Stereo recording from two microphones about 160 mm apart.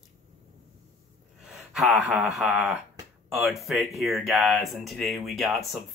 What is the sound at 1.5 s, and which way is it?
A man's voice, centre (ahead or behind).